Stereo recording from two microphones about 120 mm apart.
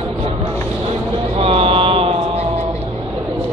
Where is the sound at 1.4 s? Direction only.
55° right (ahead or behind).